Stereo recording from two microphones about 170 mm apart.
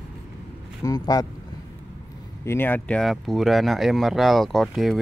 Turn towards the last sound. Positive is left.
turn(degrees=0)  # may be behind; listen again after turning